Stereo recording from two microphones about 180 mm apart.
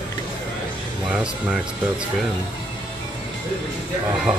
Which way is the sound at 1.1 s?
5° right (ahead or behind).